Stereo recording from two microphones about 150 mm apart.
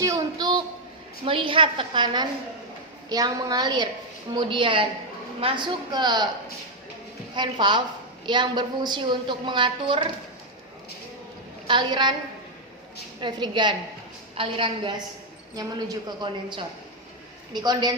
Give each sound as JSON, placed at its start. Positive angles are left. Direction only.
{"t": 0.0, "sound": "a sound", "side_deg": -25}
{"t": 1.2, "sound": "a woman's voice", "side_deg": -35}
{"t": 7.3, "sound": "a woman's voice", "side_deg": -30}
{"t": 11.7, "sound": "a woman's voice", "side_deg": -30}
{"t": 13.1, "sound": "a woman's voice", "side_deg": -30}